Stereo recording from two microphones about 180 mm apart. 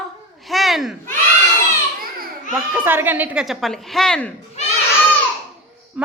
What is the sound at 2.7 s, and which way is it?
Speech, 10° right (ahead or behind).